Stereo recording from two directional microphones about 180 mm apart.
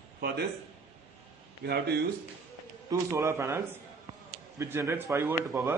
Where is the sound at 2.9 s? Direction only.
15° right (ahead or behind).